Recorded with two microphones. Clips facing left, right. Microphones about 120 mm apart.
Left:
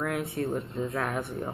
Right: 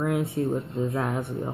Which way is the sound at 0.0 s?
20° right (ahead or behind).